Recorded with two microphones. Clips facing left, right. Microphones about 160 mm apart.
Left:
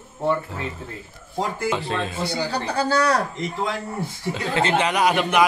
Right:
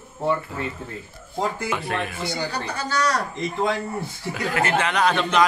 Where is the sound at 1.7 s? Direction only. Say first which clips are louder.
Left 2 dB; 25° left (ahead or behind).